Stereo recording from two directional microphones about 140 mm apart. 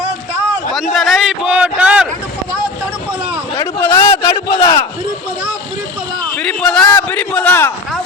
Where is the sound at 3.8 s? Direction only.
20° left (ahead or behind).